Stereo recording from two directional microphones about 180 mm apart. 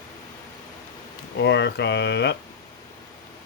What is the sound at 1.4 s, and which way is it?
Speech, 75° left (ahead or behind).